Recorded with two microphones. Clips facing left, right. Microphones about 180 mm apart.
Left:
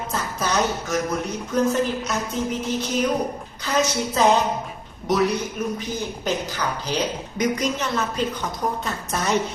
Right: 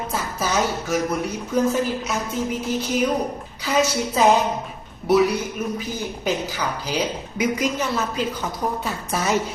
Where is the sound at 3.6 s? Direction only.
10° right (ahead or behind).